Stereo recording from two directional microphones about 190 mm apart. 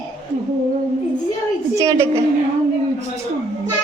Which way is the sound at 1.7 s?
15° right (ahead or behind).